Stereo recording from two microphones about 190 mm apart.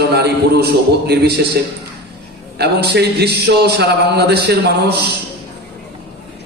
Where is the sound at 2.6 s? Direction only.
60° right (ahead or behind).